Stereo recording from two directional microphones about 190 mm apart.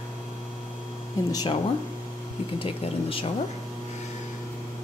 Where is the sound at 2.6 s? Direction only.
30° left (ahead or behind).